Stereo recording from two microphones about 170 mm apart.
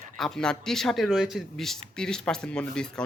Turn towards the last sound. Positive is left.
turn(degrees=5)  # may be behind; listen again after turning